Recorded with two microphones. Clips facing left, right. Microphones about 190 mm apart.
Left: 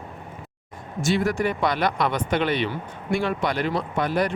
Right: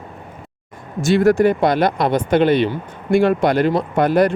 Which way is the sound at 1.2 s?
60° right (ahead or behind).